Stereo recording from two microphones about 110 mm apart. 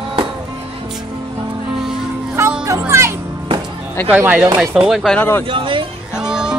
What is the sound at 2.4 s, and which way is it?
Music, 25° right (ahead or behind).